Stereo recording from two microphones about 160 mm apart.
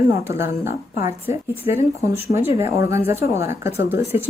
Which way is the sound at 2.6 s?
20° right (ahead or behind).